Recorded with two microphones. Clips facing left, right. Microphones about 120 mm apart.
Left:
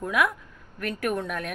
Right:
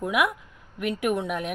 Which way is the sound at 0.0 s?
15° right (ahead or behind).